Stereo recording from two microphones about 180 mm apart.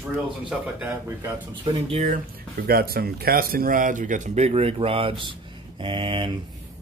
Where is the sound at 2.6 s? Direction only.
60° right (ahead or behind); by 6.3 s 30° right (ahead or behind).